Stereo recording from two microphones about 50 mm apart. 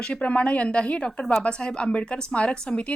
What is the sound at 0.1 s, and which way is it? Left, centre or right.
Speech, left.